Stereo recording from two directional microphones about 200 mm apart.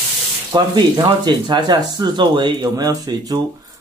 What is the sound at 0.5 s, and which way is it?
Speech, 20° right (ahead or behind).